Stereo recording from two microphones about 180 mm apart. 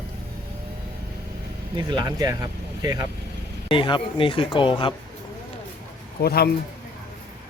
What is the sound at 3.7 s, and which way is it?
Speech, 30° left (ahead or behind).